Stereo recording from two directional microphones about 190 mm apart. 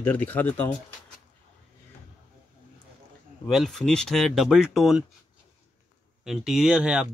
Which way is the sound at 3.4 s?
Centre (ahead or behind).